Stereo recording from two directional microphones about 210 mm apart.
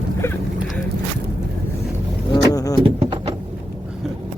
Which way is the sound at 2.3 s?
15° left (ahead or behind).